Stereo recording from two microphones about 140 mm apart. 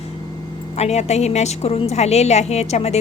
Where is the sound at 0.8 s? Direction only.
50° left (ahead or behind).